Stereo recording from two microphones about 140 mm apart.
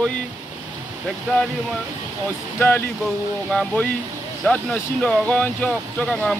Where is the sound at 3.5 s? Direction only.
5° left (ahead or behind).